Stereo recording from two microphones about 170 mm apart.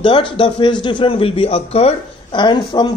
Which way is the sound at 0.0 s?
30° left (ahead or behind).